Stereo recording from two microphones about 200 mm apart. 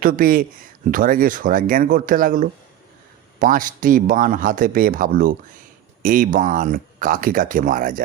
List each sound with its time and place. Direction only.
0.0 s a man's voice: 45° right (ahead or behind)